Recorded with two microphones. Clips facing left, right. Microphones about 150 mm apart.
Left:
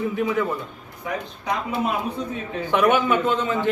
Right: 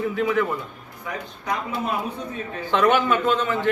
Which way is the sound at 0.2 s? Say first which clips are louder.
Right 2 dB; 20° left (ahead or behind).